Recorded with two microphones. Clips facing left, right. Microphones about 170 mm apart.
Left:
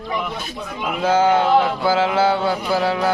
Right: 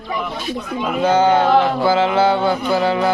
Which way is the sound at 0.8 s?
5° left (ahead or behind).